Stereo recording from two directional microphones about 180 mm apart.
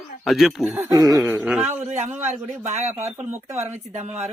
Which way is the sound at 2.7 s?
40° right (ahead or behind).